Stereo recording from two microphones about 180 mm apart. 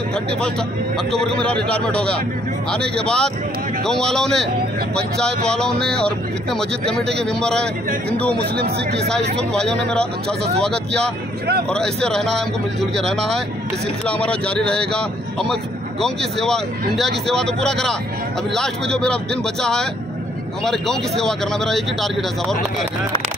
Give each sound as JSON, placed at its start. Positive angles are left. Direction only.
{"t": 1.1, "sound": "speech", "side_deg": 5}
{"t": 5.5, "sound": "speech", "side_deg": 5}
{"t": 8.4, "sound": "speech", "side_deg": -60}
{"t": 9.4, "sound": "speech", "side_deg": 5}
{"t": 11.7, "sound": "speech", "side_deg": 5}